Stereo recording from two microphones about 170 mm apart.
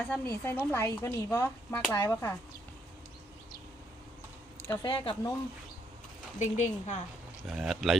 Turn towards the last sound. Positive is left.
turn(degrees=0)  # may be behind; listen again after turning